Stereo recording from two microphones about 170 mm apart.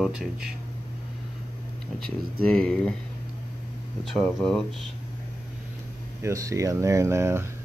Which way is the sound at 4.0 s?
5° left (ahead or behind).